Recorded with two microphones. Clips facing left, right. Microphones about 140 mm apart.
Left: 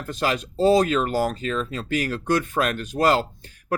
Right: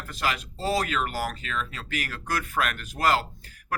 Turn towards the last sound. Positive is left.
turn(degrees=30)  # may be behind; listen again after turning